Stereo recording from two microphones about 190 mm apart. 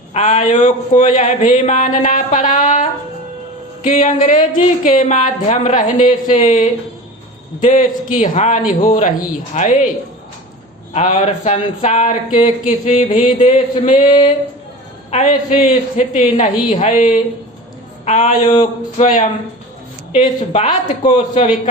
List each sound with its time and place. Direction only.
0.1 s speech: 35° left (ahead or behind)
3.8 s a man's voice: 40° left (ahead or behind)
10.9 s speech: 35° left (ahead or behind)